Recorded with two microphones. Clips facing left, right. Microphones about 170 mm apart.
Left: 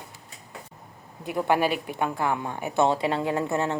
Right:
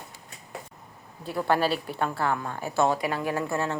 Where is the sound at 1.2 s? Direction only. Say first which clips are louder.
Left 1 dB; 15° left (ahead or behind).